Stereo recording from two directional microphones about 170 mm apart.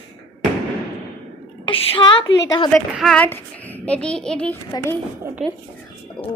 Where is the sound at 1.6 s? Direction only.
30° left (ahead or behind).